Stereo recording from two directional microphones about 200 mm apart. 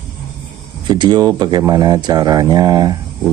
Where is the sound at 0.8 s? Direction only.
20° right (ahead or behind).